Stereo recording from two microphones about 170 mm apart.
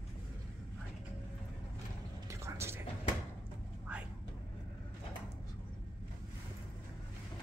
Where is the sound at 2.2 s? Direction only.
15° right (ahead or behind).